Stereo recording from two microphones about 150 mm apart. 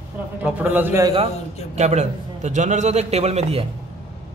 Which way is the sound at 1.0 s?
35° right (ahead or behind).